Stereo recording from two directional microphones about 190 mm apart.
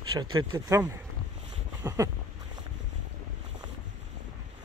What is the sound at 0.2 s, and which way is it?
Speech, 20° right (ahead or behind).